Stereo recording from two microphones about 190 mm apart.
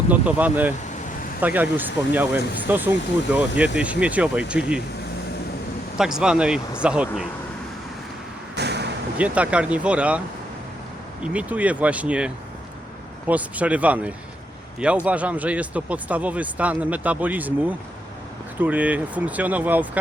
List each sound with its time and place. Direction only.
0.1 s speech: 10° right (ahead or behind)
6.0 s speech: 5° right (ahead or behind)
8.5 s a sound: 60° right (ahead or behind)
9.1 s speech: 5° right (ahead or behind)
11.2 s speech: 5° right (ahead or behind)